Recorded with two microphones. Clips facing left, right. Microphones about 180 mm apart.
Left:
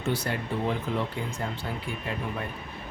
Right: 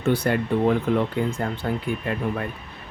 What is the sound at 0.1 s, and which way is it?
Speech, 60° right (ahead or behind).